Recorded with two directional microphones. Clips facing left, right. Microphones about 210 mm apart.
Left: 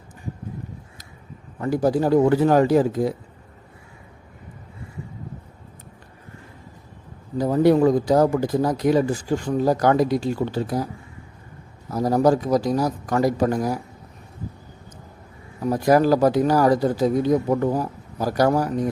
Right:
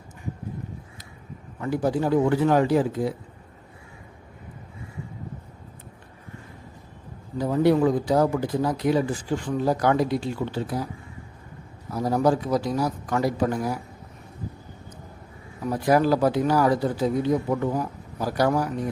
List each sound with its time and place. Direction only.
1.6 s speech: 40° left (ahead or behind)
7.3 s speech: 40° left (ahead or behind)
11.9 s speech: 40° left (ahead or behind)
15.7 s speech: 40° left (ahead or behind)